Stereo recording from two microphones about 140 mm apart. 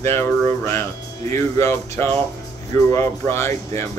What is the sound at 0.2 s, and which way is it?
Speech, 15° left (ahead or behind).